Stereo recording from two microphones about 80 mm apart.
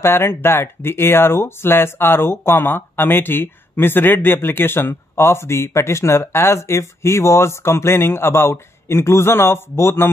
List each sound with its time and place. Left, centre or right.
0.0 s speech: left